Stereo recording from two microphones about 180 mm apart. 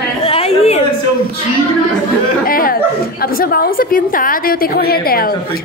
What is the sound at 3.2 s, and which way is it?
A woman's voice, 55° left (ahead or behind).